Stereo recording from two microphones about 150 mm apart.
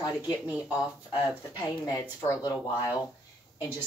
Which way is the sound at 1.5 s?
25° left (ahead or behind).